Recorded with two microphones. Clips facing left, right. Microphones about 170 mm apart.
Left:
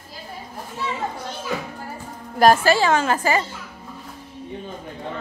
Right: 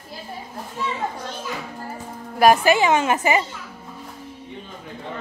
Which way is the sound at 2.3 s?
15° right (ahead or behind).